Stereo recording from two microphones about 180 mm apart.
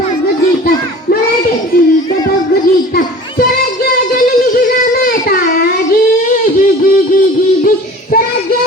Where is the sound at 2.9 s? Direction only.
55° left (ahead or behind).